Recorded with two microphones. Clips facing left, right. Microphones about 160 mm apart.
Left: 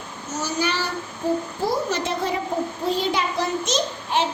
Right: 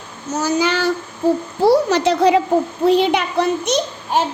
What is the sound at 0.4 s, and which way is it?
Child singing, 90° right.